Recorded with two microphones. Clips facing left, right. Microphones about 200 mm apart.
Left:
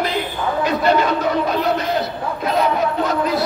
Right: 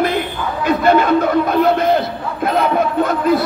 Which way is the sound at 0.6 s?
55° right (ahead or behind).